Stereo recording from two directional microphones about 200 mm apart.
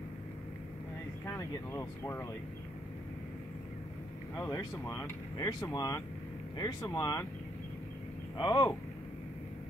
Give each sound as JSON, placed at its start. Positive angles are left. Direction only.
{"t": 1.2, "sound": "speech", "side_deg": 15}
{"t": 4.4, "sound": "speech", "side_deg": 15}
{"t": 8.4, "sound": "speech", "side_deg": 20}